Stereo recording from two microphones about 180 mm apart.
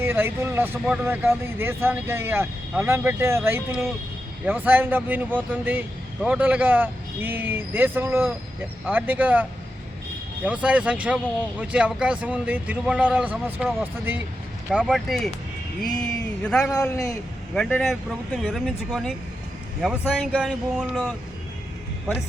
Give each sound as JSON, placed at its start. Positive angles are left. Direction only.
{"t": 0.0, "sound": "speech", "side_deg": -10}
{"t": 15.9, "sound": "speech", "side_deg": 20}
{"t": 16.4, "sound": "speech", "side_deg": 5}
{"t": 16.9, "sound": "a man's voice", "side_deg": 20}
{"t": 17.5, "sound": "speech", "side_deg": 5}